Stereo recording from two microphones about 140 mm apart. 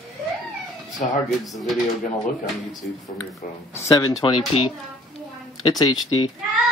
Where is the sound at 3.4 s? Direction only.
80° left.